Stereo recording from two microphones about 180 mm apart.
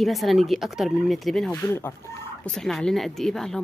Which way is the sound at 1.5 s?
15° left (ahead or behind).